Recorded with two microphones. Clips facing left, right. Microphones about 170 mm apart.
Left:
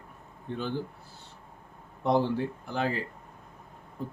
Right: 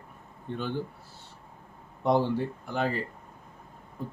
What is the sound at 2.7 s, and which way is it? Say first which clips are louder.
Speech: right 1 dB; centre (ahead or behind).